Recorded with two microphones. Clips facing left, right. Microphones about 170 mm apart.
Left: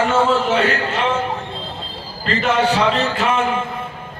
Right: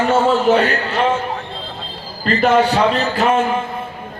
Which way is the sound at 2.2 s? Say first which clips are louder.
Right 4 dB; 35° right (ahead or behind).